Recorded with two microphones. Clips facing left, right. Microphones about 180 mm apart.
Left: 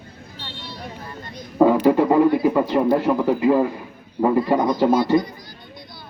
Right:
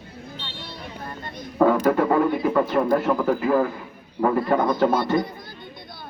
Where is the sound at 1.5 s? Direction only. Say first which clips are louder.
Left 3 dB; 15° left (ahead or behind).